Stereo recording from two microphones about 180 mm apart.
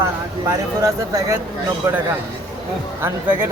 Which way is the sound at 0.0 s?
15° right (ahead or behind).